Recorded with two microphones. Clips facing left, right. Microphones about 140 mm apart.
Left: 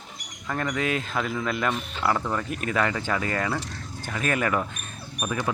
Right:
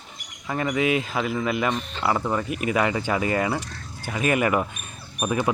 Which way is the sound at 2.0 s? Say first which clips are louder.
Right 2 dB; 10° right (ahead or behind).